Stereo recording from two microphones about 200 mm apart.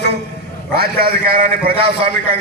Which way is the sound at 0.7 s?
50° right (ahead or behind).